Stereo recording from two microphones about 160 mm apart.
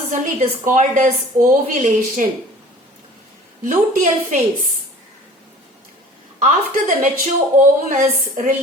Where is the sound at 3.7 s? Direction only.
55° right (ahead or behind).